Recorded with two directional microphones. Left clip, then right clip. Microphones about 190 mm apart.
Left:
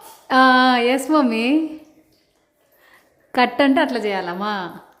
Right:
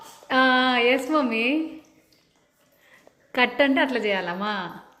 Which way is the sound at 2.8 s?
30° left (ahead or behind).